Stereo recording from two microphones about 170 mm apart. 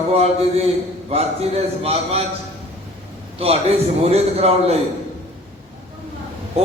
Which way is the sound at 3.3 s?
35° right (ahead or behind).